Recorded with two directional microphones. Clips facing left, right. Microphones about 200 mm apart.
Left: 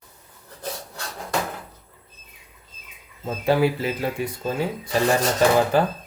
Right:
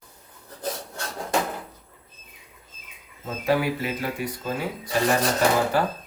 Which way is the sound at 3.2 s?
30° left (ahead or behind).